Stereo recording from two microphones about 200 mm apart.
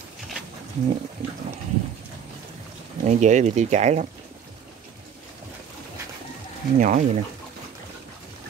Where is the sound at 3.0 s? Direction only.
35° right (ahead or behind).